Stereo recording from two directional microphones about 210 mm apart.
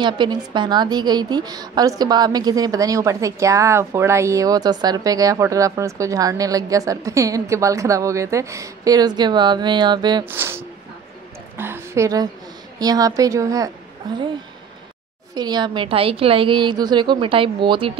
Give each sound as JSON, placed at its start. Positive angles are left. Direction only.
{"t": 0.0, "sound": "a woman's voice", "side_deg": -20}
{"t": 11.5, "sound": "a sound", "side_deg": -10}
{"t": 12.7, "sound": "a woman's voice", "side_deg": -15}
{"t": 15.3, "sound": "a woman's voice", "side_deg": -20}